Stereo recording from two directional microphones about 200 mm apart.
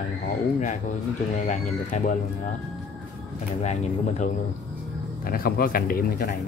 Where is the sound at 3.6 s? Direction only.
35° left (ahead or behind).